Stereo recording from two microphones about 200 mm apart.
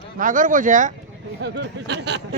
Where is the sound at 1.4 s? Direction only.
60° right (ahead or behind).